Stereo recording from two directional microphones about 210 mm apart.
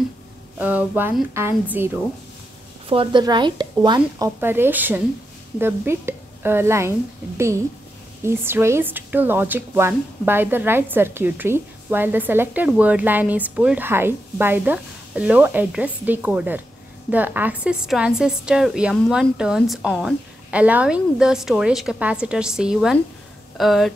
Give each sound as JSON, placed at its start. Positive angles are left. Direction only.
{"t": 0.6, "sound": "a woman's voice", "side_deg": -10}
{"t": 2.9, "sound": "a woman's voice", "side_deg": -25}
{"t": 8.2, "sound": "a woman's voice", "side_deg": -10}